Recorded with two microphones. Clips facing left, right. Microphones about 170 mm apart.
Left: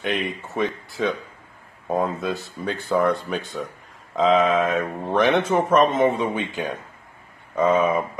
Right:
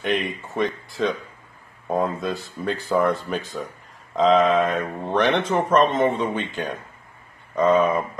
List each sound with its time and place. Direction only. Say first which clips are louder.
0.0 s speech: right 1 dB; centre (ahead or behind)